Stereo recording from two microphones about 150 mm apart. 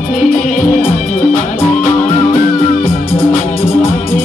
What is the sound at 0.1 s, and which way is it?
Music, 60° left (ahead or behind).